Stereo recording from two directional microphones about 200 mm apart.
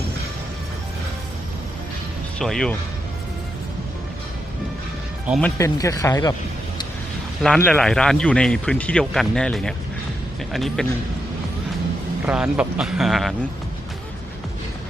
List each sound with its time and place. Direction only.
2.4 s speech: 5° left (ahead or behind)
5.4 s speech: 15° left (ahead or behind)
7.4 s speech: 5° left (ahead or behind)
12.2 s speech: 5° right (ahead or behind)